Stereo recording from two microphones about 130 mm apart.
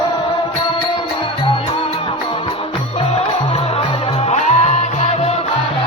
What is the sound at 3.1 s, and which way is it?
Music, 50° left (ahead or behind).